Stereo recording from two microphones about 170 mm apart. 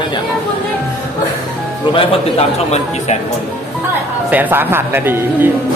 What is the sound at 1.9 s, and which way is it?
A man's voice, 40° left (ahead or behind).